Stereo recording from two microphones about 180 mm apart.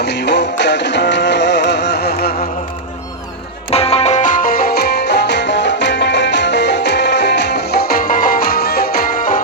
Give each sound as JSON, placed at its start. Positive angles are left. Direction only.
{"t": 0.0, "sound": "music", "side_deg": 70}
{"t": 3.7, "sound": "music", "side_deg": 35}